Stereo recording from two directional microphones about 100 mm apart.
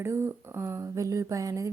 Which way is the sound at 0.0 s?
30° right (ahead or behind).